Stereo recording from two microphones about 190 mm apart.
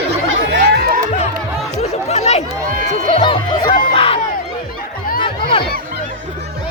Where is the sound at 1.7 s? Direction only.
35° left (ahead or behind).